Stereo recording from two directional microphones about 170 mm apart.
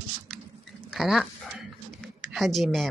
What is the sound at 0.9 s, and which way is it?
Speech, centre (ahead or behind).